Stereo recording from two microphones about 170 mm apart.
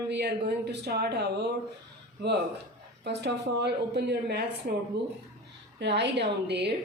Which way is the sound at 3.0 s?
90° right.